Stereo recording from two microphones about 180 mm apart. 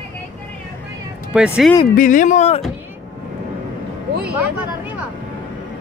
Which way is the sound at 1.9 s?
45° left (ahead or behind).